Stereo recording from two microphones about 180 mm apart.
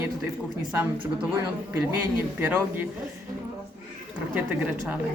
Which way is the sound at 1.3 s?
15° right (ahead or behind).